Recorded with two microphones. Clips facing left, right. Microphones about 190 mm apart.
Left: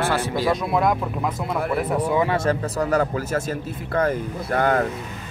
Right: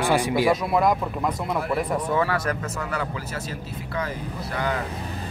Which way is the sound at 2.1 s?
20° left (ahead or behind).